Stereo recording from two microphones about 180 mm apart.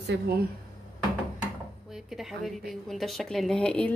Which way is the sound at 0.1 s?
65° right (ahead or behind).